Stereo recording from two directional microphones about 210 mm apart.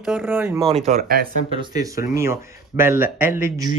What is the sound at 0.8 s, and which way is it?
Speech, 45° right (ahead or behind).